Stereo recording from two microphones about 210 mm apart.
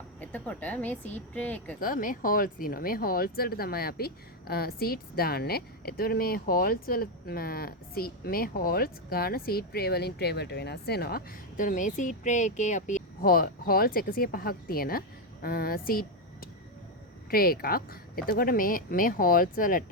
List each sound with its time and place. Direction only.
0.2 s speech: 10° left (ahead or behind)
1.8 s speech: 40° left (ahead or behind)